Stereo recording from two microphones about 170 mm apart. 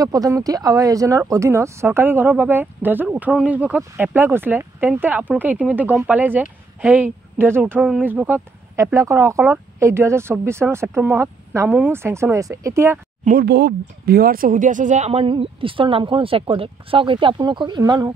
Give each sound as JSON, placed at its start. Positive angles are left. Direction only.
{"t": 0.0, "sound": "speech", "side_deg": -20}
{"t": 13.2, "sound": "speech", "side_deg": -50}
{"t": 13.5, "sound": "speech", "side_deg": -70}